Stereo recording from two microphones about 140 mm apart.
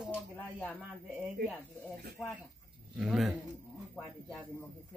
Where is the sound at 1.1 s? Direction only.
5° right (ahead or behind).